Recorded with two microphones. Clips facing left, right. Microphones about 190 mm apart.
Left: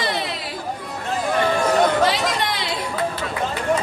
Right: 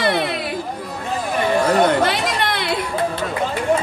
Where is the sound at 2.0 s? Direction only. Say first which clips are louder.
Even; 60° right (ahead or behind).